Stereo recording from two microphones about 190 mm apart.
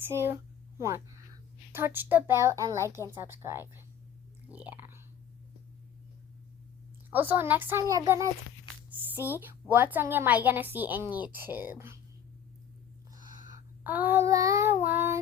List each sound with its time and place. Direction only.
0.0 s a woman's voice: 10° right (ahead or behind)
4.5 s whispering: 10° right (ahead or behind)
7.1 s a woman's voice: 10° right (ahead or behind)
13.1 s a sound: 45° right (ahead or behind)
13.8 s a woman's voice: 10° right (ahead or behind)